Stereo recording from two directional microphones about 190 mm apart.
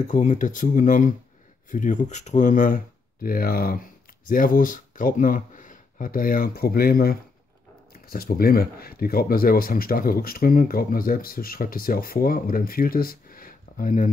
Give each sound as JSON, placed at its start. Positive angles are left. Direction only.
{"t": 0.0, "sound": "speech", "side_deg": 40}